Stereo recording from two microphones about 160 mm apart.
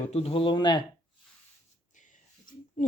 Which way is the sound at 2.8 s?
50° left (ahead or behind).